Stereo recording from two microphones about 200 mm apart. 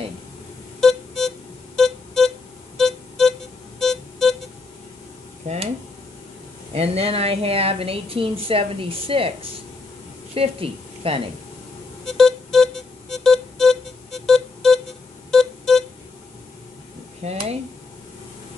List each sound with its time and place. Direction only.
0.7 s music: centre (ahead or behind)
5.4 s speech: 35° right (ahead or behind)
6.7 s a woman's voice: 30° right (ahead or behind)
12.1 s music: centre (ahead or behind)
17.2 s a sound: 30° right (ahead or behind)